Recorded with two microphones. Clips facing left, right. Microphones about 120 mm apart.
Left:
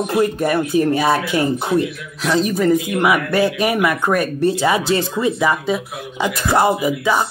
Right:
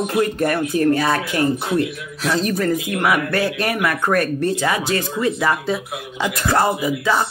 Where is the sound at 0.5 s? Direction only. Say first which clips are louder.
Even; 20° left (ahead or behind).